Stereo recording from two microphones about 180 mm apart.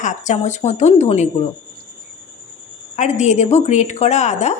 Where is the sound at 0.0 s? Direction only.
40° left (ahead or behind).